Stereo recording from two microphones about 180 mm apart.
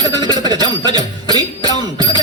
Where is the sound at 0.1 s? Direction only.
25° right (ahead or behind).